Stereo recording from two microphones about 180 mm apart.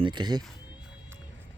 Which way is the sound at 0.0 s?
25° right (ahead or behind).